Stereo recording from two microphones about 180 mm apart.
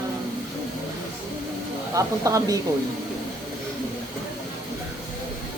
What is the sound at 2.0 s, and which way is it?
Speech, 20° right (ahead or behind).